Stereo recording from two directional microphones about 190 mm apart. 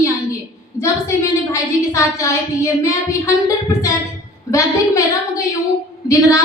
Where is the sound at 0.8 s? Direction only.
15° left (ahead or behind).